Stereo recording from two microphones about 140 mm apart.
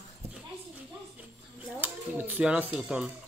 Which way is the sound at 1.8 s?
15° right (ahead or behind).